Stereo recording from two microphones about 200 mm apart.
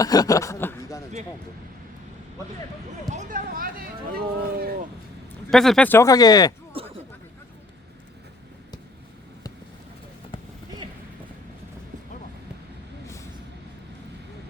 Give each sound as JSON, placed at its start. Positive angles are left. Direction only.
{"t": 0.0, "sound": "speech", "side_deg": 20}
{"t": 3.1, "sound": "speech", "side_deg": -40}
{"t": 5.5, "sound": "speech", "side_deg": 0}
{"t": 6.8, "sound": "a sound", "side_deg": -30}